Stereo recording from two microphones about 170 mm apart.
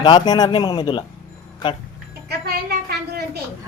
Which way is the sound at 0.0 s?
25° left (ahead or behind).